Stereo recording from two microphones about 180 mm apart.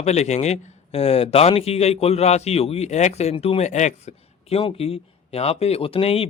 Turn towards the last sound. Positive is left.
turn(degrees=35)  # may be behind; listen again after turning